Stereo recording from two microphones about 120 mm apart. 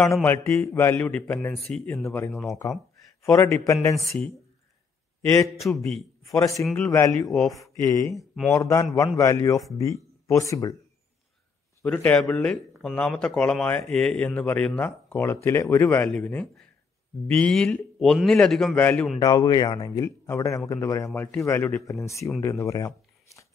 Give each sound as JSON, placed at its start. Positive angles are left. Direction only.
{"t": 0.1, "sound": "speech", "side_deg": 20}
{"t": 1.6, "sound": "a man's voice", "side_deg": 5}
{"t": 1.9, "sound": "speech", "side_deg": 15}
{"t": 5.6, "sound": "speech", "side_deg": 10}
{"t": 6.2, "sound": "speech", "side_deg": 30}
{"t": 7.2, "sound": "a man's voice", "side_deg": 0}
{"t": 7.5, "sound": "speech", "side_deg": 25}
{"t": 8.2, "sound": "speech", "side_deg": 0}
{"t": 8.5, "sound": "speech", "side_deg": 25}
{"t": 11.8, "sound": "a man's voice", "side_deg": 15}
{"t": 18.8, "sound": "speech", "side_deg": 15}
{"t": 19.1, "sound": "speech", "side_deg": 35}
{"t": 21.1, "sound": "speech", "side_deg": 15}